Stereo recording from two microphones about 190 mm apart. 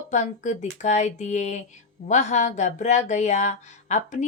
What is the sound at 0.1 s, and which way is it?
Speech, 40° left (ahead or behind).